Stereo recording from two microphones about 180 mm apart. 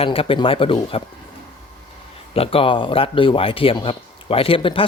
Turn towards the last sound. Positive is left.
turn(degrees=30)  # may be behind; listen again after turning